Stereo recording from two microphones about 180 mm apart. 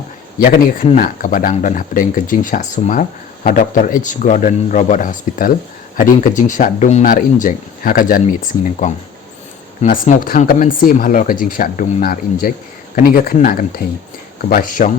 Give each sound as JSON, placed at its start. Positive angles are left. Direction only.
{"t": 0.3, "sound": "speech", "side_deg": 50}
{"t": 9.8, "sound": "speech", "side_deg": 45}